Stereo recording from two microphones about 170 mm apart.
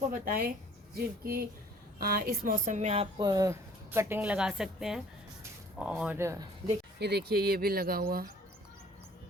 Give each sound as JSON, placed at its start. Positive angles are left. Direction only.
{"t": 0.1, "sound": "speech", "side_deg": -55}
{"t": 3.2, "sound": "a woman's voice", "side_deg": -25}
{"t": 6.1, "sound": "a woman's voice", "side_deg": -15}
{"t": 7.0, "sound": "speech", "side_deg": -70}